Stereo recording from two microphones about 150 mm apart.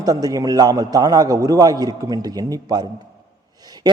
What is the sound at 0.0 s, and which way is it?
A man's voice, 25° right (ahead or behind).